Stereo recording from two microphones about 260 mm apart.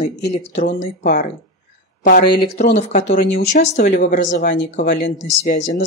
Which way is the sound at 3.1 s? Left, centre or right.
Left.